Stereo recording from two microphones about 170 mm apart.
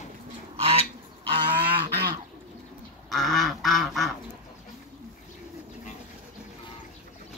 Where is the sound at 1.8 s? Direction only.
70° right (ahead or behind).